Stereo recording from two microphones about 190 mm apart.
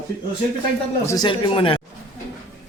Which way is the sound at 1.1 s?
25° left (ahead or behind).